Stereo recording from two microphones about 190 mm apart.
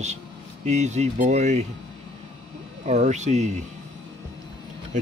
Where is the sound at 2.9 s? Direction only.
35° right (ahead or behind).